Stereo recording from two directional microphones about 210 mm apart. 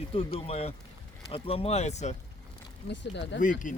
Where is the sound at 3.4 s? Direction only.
40° left (ahead or behind).